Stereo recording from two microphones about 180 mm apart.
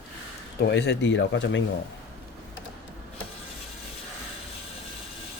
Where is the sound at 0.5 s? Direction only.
65° left (ahead or behind); by 1.6 s 90° left.